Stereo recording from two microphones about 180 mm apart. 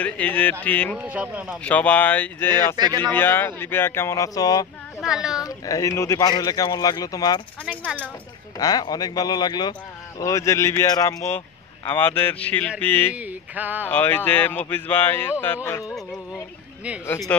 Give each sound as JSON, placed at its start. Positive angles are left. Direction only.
{"t": 0.0, "sound": "a man's voice", "side_deg": 10}
{"t": 0.9, "sound": "a sound", "side_deg": -5}
{"t": 1.6, "sound": "a man's voice", "side_deg": 10}
{"t": 5.0, "sound": "speech", "side_deg": -5}
{"t": 5.4, "sound": "speech", "side_deg": 20}
{"t": 7.7, "sound": "a man's voice", "side_deg": 5}
{"t": 8.5, "sound": "a man's voice", "side_deg": 20}
{"t": 13.1, "sound": "a sound", "side_deg": -10}
{"t": 13.8, "sound": "a man's voice", "side_deg": 10}
{"t": 17.3, "sound": "a man's voice", "side_deg": 5}